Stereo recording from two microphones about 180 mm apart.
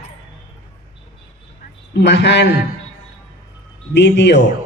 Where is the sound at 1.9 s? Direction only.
70° left (ahead or behind).